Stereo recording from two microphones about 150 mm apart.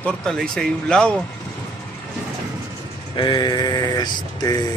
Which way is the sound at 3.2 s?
30° left (ahead or behind).